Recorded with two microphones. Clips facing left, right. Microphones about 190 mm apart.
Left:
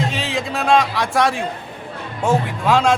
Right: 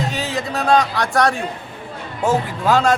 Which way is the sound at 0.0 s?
Centre (ahead or behind).